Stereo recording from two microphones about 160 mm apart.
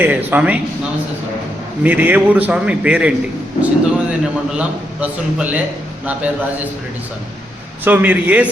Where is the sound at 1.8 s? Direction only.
10° right (ahead or behind).